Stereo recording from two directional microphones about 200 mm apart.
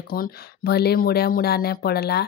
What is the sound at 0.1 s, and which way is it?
Speech, 50° left (ahead or behind).